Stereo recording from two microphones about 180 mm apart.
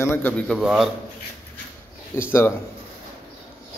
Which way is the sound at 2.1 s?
15° left (ahead or behind).